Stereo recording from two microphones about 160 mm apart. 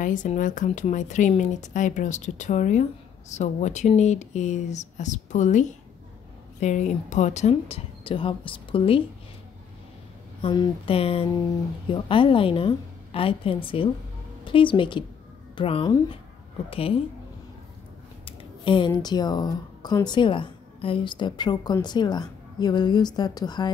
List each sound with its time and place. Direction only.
0.0 s a woman's voice: 55° left (ahead or behind); by 9.0 s 35° left (ahead or behind)
10.4 s a woman's voice: 30° left (ahead or behind)
18.2 s speech: 30° left (ahead or behind)